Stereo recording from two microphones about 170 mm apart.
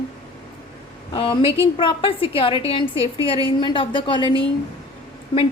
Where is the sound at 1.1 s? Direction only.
30° left (ahead or behind).